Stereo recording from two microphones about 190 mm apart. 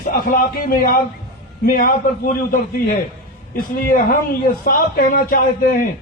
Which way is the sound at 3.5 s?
50° left (ahead or behind).